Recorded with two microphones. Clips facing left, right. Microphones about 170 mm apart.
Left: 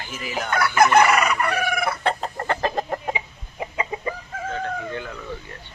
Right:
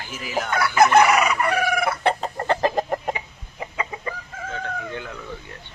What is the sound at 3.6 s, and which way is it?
Chicken, 20° left (ahead or behind).